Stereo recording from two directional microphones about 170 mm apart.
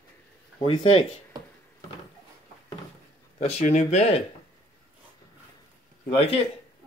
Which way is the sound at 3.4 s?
40° left (ahead or behind).